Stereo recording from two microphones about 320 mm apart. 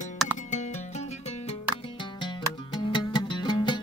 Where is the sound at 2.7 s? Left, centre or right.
Centre.